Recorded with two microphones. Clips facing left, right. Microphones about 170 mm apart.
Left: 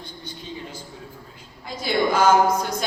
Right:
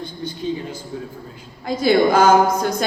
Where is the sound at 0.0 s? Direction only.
45° right (ahead or behind).